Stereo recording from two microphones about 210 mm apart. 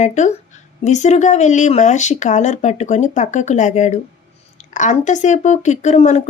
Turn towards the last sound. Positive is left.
turn(degrees=30)  # may be behind; listen again after turning